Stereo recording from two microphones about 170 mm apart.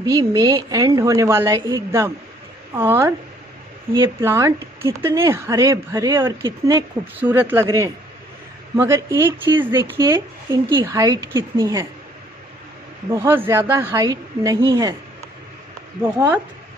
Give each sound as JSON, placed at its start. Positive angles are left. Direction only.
{"t": 0.0, "sound": "a woman's voice", "side_deg": -20}
{"t": 13.1, "sound": "a woman's voice", "side_deg": -15}